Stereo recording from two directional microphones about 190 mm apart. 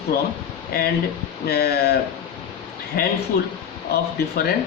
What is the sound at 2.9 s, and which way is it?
Speech, 50° left (ahead or behind).